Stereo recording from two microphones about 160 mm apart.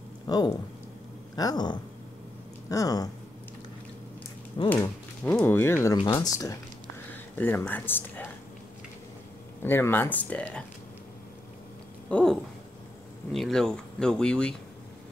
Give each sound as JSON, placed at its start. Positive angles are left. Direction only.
{"t": 0.3, "sound": "speech", "side_deg": 25}
{"t": 4.6, "sound": "speech", "side_deg": 25}
{"t": 5.2, "sound": "speech", "side_deg": 10}
{"t": 7.1, "sound": "speech", "side_deg": 10}
{"t": 9.6, "sound": "speech", "side_deg": 15}
{"t": 12.1, "sound": "speech", "side_deg": 5}